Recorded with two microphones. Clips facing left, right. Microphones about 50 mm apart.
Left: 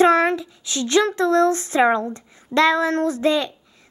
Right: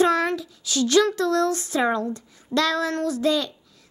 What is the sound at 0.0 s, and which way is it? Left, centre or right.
A child's voice, left.